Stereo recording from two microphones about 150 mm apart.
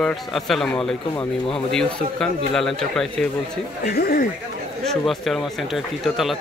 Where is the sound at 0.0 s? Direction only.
Centre (ahead or behind).